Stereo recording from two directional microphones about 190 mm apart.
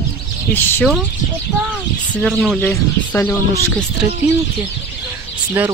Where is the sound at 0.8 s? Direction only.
Centre (ahead or behind).